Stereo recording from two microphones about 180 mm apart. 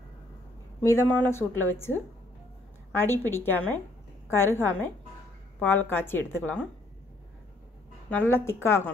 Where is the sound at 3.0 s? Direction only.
10° left (ahead or behind).